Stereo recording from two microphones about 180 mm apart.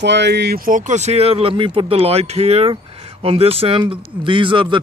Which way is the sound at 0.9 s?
40° right (ahead or behind).